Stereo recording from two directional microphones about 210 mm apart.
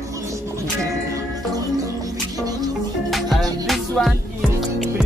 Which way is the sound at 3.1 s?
Centre (ahead or behind).